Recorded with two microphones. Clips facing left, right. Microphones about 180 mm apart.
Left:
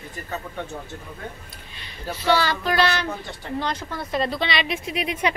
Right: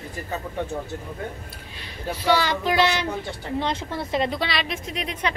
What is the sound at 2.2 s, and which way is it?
A child's voice, 15° right (ahead or behind).